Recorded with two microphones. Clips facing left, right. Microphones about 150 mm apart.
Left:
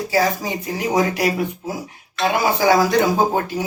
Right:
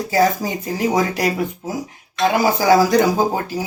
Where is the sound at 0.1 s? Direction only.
45° right (ahead or behind).